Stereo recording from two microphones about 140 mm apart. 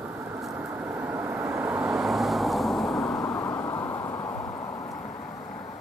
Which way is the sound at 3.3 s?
25° left (ahead or behind).